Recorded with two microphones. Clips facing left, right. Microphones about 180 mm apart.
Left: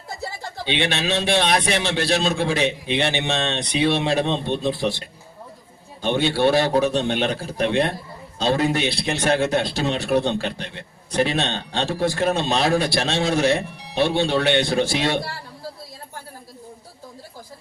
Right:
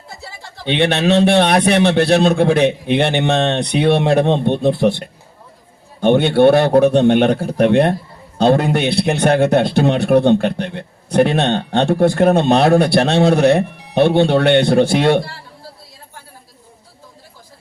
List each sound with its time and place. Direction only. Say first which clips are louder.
0.6 s a man's voice: right 8 dB; 55° right (ahead or behind)